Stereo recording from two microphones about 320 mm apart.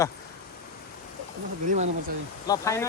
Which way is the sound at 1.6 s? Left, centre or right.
Right.